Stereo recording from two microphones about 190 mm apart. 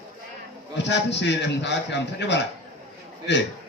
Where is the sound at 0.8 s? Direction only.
65° left (ahead or behind).